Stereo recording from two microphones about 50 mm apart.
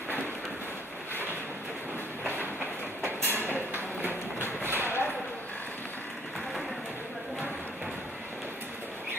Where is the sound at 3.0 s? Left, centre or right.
Right.